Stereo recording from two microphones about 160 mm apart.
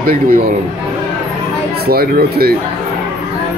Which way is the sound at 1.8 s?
70° right (ahead or behind).